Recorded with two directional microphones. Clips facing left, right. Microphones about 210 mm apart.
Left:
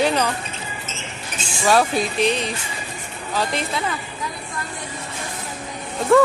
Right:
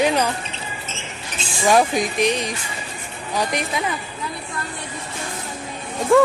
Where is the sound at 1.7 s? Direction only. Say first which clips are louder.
Right 1 dB; 15° right (ahead or behind).